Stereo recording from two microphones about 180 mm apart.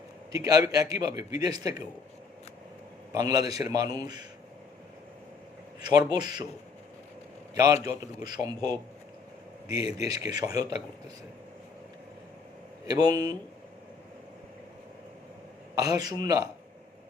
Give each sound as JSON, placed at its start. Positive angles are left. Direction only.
{"t": 0.3, "sound": "a man's voice", "side_deg": -20}
{"t": 3.1, "sound": "a man's voice", "side_deg": -20}
{"t": 6.1, "sound": "a man's voice", "side_deg": -20}
{"t": 7.5, "sound": "a man's voice", "side_deg": -20}
{"t": 12.9, "sound": "a man's voice", "side_deg": -20}
{"t": 15.7, "sound": "a man's voice", "side_deg": -20}